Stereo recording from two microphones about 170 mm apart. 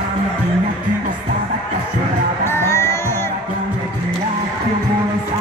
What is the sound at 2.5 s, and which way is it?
Music, 15° left (ahead or behind).